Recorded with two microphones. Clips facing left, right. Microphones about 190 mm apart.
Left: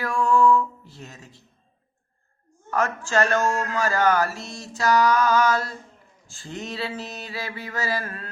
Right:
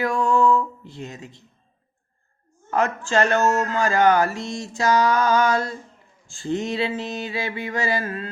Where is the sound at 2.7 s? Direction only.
20° right (ahead or behind).